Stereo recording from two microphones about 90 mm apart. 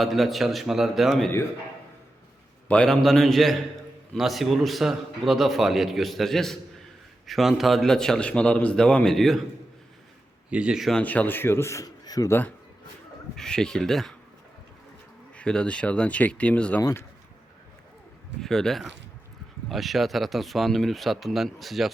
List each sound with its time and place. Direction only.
0.0 s a man's voice: centre (ahead or behind)
2.6 s a man's voice: 10° left (ahead or behind)
10.5 s speech: 10° right (ahead or behind)
11.0 s speech: 20° left (ahead or behind)
12.0 s speech: 45° left (ahead or behind)
13.3 s a man's voice: 5° left (ahead or behind)
15.4 s a man's voice: 10° left (ahead or behind)
18.3 s a man's voice: 5° left (ahead or behind)